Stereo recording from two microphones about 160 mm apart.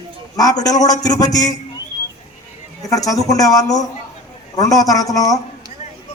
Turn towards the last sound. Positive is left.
turn(degrees=20)  # may be behind; listen again after turning